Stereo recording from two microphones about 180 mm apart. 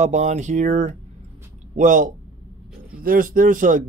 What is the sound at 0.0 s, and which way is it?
Speech, 40° right (ahead or behind).